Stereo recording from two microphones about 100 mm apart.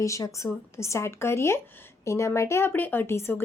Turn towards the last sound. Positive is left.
turn(degrees=25)  # may be behind; listen again after turning